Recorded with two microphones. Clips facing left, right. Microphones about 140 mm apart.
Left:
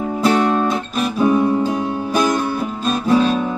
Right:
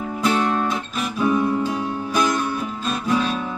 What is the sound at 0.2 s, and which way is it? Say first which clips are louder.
Music: left 5 dB; 35° left (ahead or behind).